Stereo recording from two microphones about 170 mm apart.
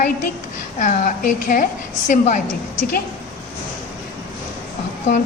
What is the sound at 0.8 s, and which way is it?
A woman's voice, 50° left (ahead or behind).